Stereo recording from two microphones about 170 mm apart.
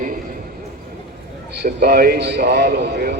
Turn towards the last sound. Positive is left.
turn(degrees=-70)  # may be behind; listen again after turning